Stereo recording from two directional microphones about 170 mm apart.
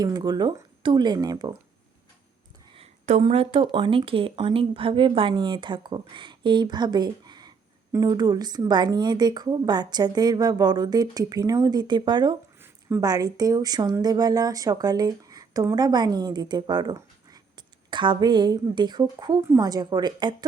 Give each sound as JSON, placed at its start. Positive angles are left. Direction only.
{"t": 0.0, "sound": "speech", "side_deg": -25}
{"t": 2.7, "sound": "speech", "side_deg": -35}